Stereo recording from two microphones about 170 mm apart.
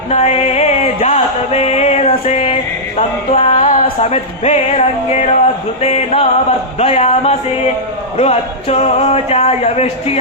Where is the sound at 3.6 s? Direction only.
40° left (ahead or behind).